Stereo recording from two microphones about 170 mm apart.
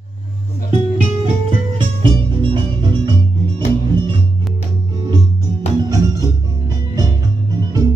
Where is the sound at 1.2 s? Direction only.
30° right (ahead or behind).